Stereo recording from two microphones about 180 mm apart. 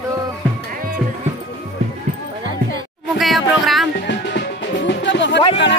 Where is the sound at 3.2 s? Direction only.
Centre (ahead or behind).